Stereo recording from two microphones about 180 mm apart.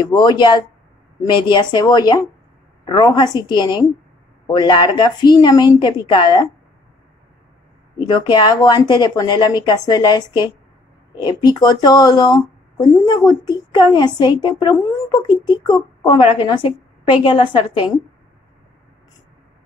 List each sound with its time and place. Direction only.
0.0 s a woman's voice: 25° left (ahead or behind)
8.1 s a woman's voice: 25° left (ahead or behind)